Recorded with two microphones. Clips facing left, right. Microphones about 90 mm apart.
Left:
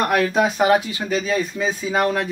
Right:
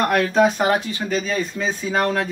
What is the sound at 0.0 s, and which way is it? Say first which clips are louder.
Speech: right 1 dB; 5° left (ahead or behind).